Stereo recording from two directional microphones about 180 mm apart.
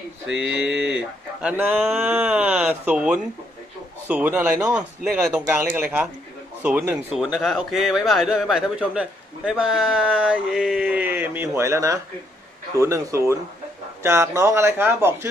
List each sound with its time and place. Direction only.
0.3 s a man's voice: 5° right (ahead or behind)